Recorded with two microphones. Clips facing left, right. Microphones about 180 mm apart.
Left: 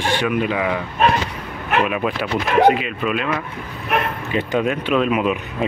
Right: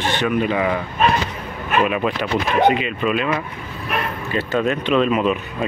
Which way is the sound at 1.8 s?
Centre (ahead or behind).